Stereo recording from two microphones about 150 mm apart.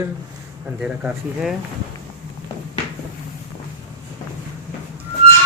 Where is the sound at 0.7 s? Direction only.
5° right (ahead or behind).